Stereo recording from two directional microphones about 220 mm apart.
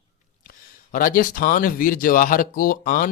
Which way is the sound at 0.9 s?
40° left (ahead or behind).